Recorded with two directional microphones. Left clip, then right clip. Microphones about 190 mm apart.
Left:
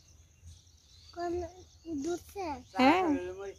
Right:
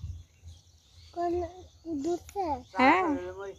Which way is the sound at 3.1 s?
5° right (ahead or behind).